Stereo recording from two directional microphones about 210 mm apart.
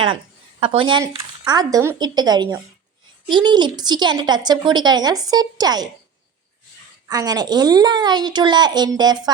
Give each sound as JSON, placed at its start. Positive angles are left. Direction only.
{"t": 0.6, "sound": "a woman's voice", "side_deg": -25}
{"t": 7.1, "sound": "a woman's voice", "side_deg": -20}